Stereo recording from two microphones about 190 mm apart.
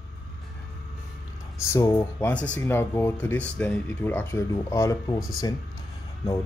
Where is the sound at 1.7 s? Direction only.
15° left (ahead or behind).